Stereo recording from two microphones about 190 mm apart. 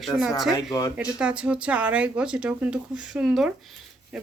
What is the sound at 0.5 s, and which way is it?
Speech, 20° left (ahead or behind).